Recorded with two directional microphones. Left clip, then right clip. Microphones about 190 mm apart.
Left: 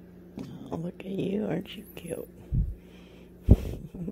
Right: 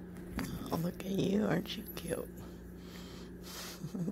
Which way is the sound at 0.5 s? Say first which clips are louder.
Left 2 dB; 25° left (ahead or behind).